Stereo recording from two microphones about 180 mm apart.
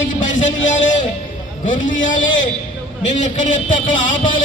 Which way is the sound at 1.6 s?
45° left (ahead or behind).